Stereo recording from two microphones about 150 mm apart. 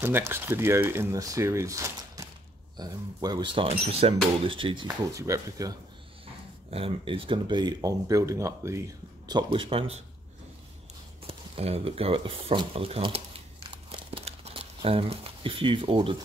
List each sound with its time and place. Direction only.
0.0 s speech: 15° right (ahead or behind)
6.2 s speech: 40° right (ahead or behind)
11.2 s a sound: 40° right (ahead or behind)